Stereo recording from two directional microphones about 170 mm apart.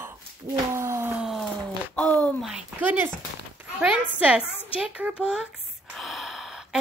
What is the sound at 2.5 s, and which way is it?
A child's voice, 10° right (ahead or behind).